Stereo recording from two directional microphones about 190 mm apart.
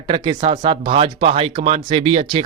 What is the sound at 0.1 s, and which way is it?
Speech, 30° right (ahead or behind).